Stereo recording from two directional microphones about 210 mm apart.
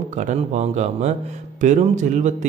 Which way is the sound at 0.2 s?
35° right (ahead or behind).